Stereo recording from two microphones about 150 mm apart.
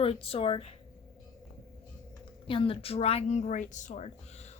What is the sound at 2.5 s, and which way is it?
Speech, 35° left (ahead or behind).